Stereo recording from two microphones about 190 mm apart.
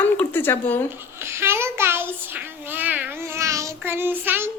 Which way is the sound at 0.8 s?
10° right (ahead or behind).